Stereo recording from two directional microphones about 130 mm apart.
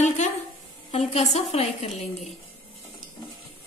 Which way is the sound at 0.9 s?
55° left (ahead or behind).